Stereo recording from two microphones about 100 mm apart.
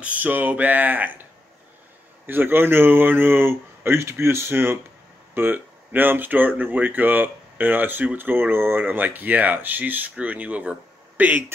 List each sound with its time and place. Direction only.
0.0 s speech: 15° right (ahead or behind)
2.2 s speech: 20° right (ahead or behind)